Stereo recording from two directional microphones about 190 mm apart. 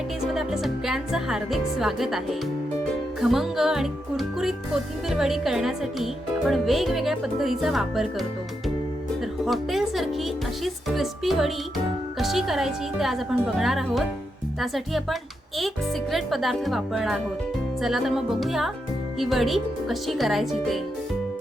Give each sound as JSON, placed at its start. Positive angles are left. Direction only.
{"t": 0.3, "sound": "speech", "side_deg": 0}
{"t": 9.4, "sound": "speech", "side_deg": 0}